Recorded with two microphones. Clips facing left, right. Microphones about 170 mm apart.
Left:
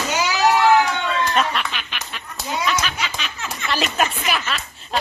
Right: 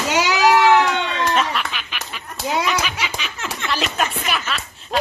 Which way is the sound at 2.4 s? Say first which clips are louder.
Right 5 dB; 90° right.